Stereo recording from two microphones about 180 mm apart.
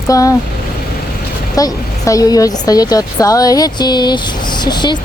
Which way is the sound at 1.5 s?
20° left (ahead or behind).